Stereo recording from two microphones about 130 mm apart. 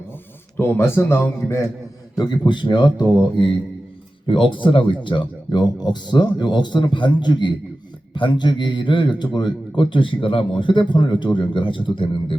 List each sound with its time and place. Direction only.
0.5 s speech: 15° left (ahead or behind)
2.1 s a man's voice: 35° left (ahead or behind)
4.3 s a man's voice: 40° left (ahead or behind)